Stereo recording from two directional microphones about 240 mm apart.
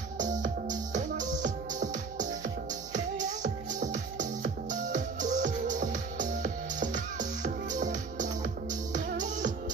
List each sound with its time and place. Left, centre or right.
0.2 s music: right